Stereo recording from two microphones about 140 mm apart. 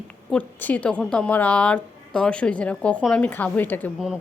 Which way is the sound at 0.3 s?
10° left (ahead or behind).